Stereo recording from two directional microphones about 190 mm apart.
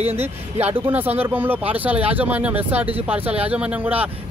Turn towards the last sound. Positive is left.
turn(degrees=-10)  # may be behind; listen again after turning